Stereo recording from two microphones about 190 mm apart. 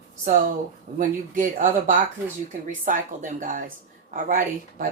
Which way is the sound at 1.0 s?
45° right (ahead or behind).